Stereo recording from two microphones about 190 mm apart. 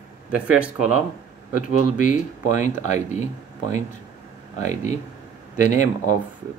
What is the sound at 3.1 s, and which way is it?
Speech, 40° left (ahead or behind).